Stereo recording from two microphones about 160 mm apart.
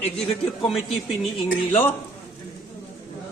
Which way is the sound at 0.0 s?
5° left (ahead or behind).